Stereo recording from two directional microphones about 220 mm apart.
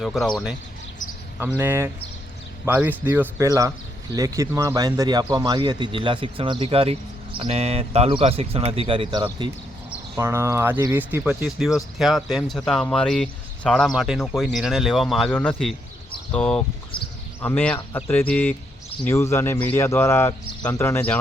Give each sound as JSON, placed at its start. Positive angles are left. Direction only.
{"t": 0.0, "sound": "speech", "side_deg": 0}
{"t": 1.5, "sound": "speech", "side_deg": -10}
{"t": 9.9, "sound": "speech", "side_deg": -10}